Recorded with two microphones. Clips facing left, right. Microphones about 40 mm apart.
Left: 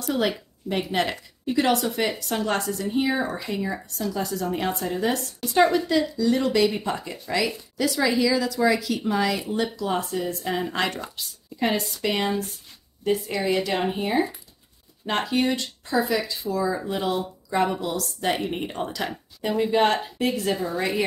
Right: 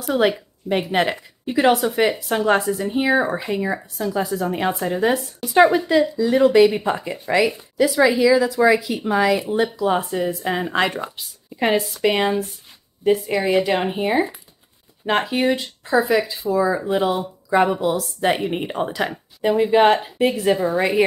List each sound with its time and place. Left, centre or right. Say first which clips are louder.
0.2 s a woman's voice: right 6 dB; right